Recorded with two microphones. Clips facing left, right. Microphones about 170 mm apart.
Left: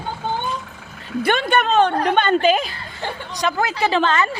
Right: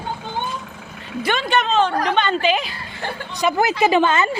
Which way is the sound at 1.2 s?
55° left (ahead or behind).